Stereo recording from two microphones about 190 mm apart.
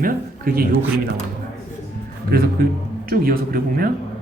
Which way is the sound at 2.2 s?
55° right (ahead or behind).